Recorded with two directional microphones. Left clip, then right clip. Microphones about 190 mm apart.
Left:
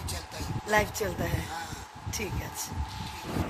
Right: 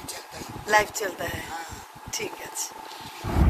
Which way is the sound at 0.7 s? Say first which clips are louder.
Right 5 dB; 5° left (ahead or behind).